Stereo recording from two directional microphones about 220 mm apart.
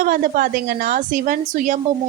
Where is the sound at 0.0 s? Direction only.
40° right (ahead or behind).